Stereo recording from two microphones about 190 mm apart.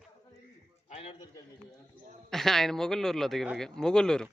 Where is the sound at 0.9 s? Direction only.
35° left (ahead or behind).